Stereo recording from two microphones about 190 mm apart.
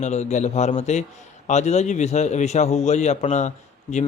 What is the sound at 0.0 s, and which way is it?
A man's voice, 35° left (ahead or behind).